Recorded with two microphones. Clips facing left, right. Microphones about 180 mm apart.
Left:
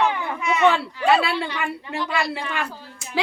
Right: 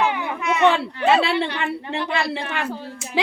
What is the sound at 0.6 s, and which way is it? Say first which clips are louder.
A woman's voice: right 1 dB; 20° right (ahead or behind).